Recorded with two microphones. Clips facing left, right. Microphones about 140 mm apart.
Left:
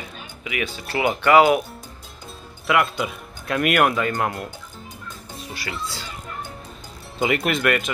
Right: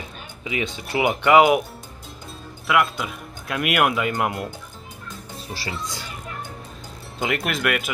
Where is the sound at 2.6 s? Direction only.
Centre (ahead or behind).